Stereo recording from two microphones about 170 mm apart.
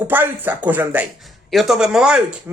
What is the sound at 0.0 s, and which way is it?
Speech, 10° right (ahead or behind).